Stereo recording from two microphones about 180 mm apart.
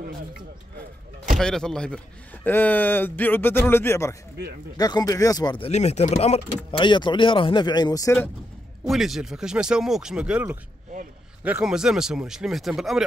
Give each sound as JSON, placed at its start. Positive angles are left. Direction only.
{"t": 1.4, "sound": "a man's voice", "side_deg": 5}
{"t": 5.7, "sound": "speech", "side_deg": 40}
{"t": 8.8, "sound": "speech", "side_deg": 0}